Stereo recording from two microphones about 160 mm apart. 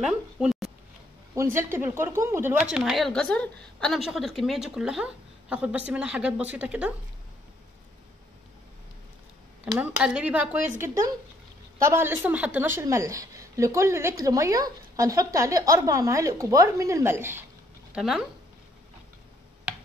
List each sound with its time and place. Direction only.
0.0 s speech: 5° right (ahead or behind)
1.3 s speech: 15° right (ahead or behind)
9.7 s speech: 5° right (ahead or behind)
11.8 s a woman's voice: 15° right (ahead or behind)
17.9 s speech: 5° right (ahead or behind)
19.7 s a sound: 5° right (ahead or behind)